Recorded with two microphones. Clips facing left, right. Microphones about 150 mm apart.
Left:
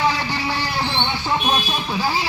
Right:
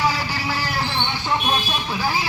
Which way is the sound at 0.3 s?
25° left (ahead or behind).